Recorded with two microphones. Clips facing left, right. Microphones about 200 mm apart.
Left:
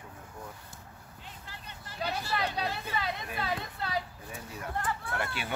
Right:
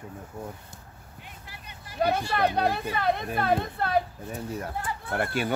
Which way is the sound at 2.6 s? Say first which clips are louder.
Right 7 dB; 55° right (ahead or behind).